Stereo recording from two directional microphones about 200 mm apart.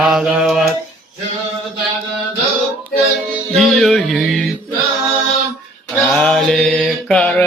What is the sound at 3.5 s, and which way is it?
Music, centre (ahead or behind).